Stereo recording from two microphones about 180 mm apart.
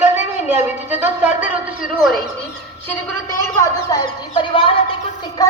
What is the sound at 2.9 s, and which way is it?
A woman's voice, 15° left (ahead or behind).